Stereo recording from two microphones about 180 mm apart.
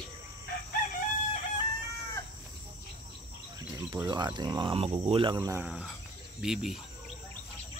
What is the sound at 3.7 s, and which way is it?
Speech, 25° right (ahead or behind).